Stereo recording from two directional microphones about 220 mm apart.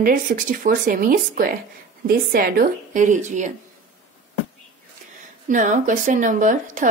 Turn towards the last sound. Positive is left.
turn(degrees=-35)  # may be behind; listen again after turning